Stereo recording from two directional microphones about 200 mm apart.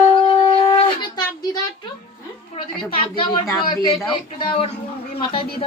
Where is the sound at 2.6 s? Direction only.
30° left (ahead or behind).